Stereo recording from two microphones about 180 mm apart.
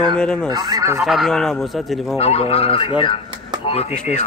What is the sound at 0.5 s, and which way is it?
Speech, 20° right (ahead or behind).